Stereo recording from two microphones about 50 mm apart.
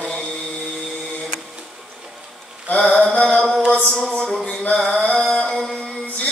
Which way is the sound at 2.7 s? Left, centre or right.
Centre.